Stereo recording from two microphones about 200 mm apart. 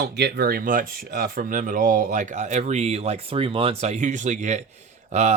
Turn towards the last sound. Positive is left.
turn(degrees=-35)  # may be behind; listen again after turning